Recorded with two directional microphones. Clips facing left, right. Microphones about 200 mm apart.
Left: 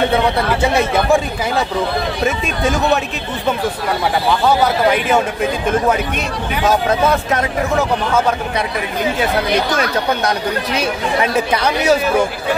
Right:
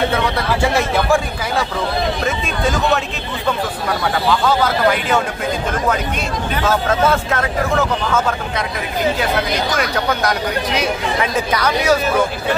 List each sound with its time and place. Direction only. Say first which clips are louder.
6.5 s speech: left 2 dB; 15° left (ahead or behind)
11.5 s speech: even; 25° left (ahead or behind)